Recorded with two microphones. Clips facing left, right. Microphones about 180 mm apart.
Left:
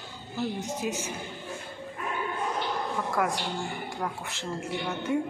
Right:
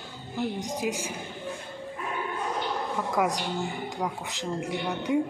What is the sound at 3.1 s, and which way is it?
A woman's voice, 20° right (ahead or behind).